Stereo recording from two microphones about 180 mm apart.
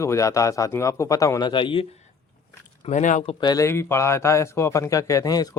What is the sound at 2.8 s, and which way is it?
Speech, 45° left (ahead or behind).